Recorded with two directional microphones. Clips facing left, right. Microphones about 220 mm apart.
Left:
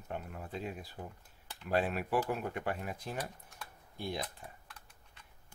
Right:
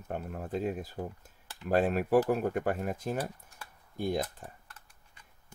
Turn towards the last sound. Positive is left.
turn(degrees=-5)  # may be behind; listen again after turning